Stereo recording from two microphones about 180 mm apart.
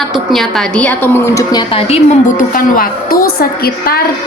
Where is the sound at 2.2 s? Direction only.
50° left (ahead or behind).